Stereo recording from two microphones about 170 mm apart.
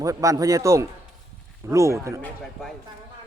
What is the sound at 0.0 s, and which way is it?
A man's voice, 20° right (ahead or behind).